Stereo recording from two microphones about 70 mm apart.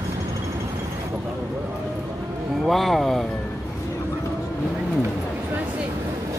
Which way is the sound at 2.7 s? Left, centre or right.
Centre.